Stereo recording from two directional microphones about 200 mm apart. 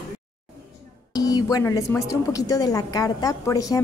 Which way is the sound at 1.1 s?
20° left (ahead or behind).